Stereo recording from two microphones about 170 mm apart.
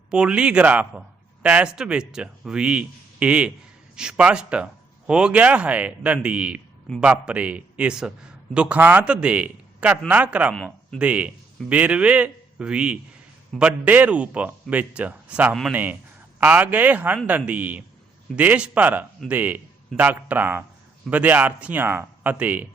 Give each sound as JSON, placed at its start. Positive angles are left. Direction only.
{"t": 0.1, "sound": "a man's voice", "side_deg": -5}
{"t": 10.5, "sound": "speech", "side_deg": 5}
{"t": 11.0, "sound": "a man's voice", "side_deg": -10}